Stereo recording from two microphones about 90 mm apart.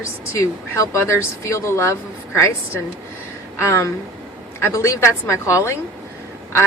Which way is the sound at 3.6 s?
30° left (ahead or behind).